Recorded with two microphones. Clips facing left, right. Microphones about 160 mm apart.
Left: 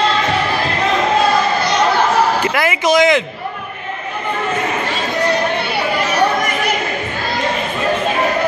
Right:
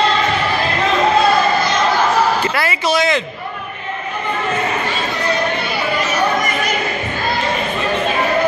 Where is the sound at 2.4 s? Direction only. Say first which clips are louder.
Left 2 dB; 15° left (ahead or behind).